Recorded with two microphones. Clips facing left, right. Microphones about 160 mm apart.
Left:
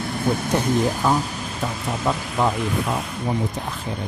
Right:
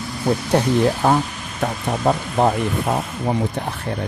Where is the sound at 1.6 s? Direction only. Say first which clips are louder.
Right 5 dB; 55° right (ahead or behind).